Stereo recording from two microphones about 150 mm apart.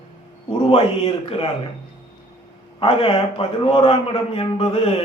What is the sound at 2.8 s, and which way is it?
A man's voice, 35° left (ahead or behind).